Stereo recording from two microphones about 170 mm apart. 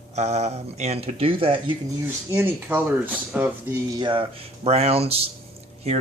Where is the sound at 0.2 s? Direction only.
40° right (ahead or behind).